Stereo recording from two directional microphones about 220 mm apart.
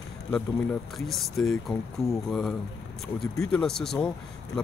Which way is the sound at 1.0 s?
Centre (ahead or behind).